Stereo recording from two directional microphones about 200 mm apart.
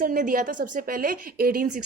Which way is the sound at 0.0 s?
45° right (ahead or behind).